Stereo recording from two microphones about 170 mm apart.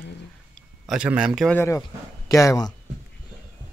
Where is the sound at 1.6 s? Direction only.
20° left (ahead or behind).